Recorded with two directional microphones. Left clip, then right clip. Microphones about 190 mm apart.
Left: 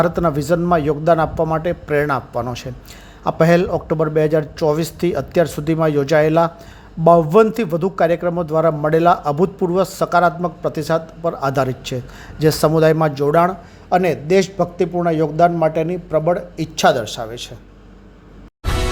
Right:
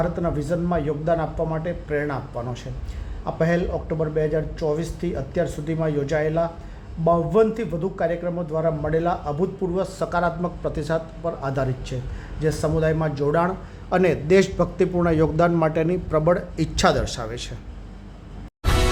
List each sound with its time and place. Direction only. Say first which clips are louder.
0.0 s a man's voice: left 8 dB; 35° left (ahead or behind)
13.9 s a man's voice: left 3 dB; 15° left (ahead or behind)
18.6 s music: even; centre (ahead or behind)